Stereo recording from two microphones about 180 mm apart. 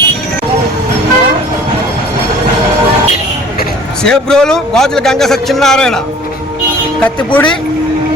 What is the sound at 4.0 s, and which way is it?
A man's voice, 5° left (ahead or behind).